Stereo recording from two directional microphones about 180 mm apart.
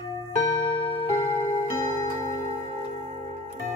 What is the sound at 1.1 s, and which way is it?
Tick-tock, 15° left (ahead or behind).